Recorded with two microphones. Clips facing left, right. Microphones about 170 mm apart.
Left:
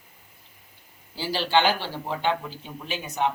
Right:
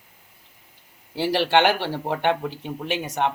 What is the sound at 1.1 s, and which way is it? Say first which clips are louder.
Speech: right 4 dB; 65° right (ahead or behind).